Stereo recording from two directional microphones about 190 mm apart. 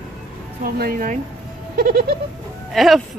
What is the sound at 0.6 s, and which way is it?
Speech, 50° right (ahead or behind).